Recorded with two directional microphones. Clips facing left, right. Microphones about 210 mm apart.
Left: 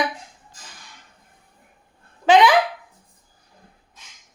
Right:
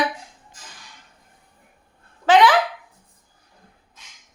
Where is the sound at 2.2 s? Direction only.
15° left (ahead or behind).